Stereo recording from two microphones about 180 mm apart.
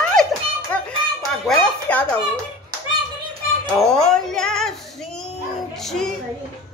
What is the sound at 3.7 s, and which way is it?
Music, 5° left (ahead or behind).